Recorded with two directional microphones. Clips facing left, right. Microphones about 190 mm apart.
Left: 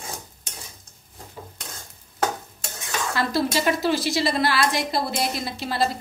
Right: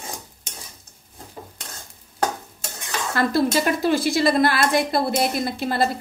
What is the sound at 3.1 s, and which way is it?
A woman's voice, 50° right (ahead or behind).